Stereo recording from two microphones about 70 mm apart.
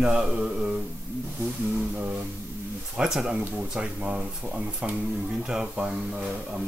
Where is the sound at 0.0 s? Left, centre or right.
Centre.